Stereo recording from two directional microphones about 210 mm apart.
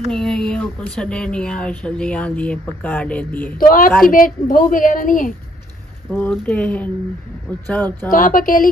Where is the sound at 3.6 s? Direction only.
40° left (ahead or behind).